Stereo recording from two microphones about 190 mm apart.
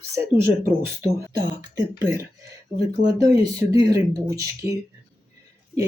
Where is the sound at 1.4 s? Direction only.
15° right (ahead or behind).